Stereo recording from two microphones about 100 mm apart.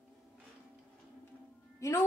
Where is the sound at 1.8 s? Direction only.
30° left (ahead or behind).